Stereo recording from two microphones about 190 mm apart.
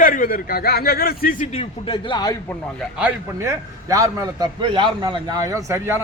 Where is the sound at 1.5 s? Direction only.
25° left (ahead or behind).